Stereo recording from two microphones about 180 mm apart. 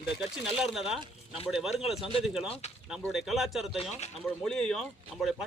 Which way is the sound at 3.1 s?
Centre (ahead or behind).